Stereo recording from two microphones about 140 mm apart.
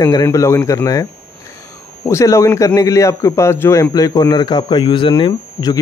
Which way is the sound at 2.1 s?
20° left (ahead or behind).